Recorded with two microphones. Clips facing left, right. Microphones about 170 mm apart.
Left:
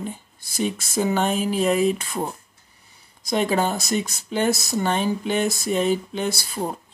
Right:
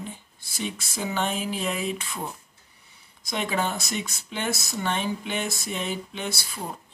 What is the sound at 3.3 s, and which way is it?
Speech, 40° left (ahead or behind).